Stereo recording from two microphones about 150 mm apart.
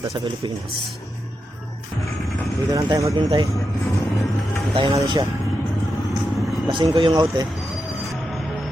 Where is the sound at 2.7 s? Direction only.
20° right (ahead or behind).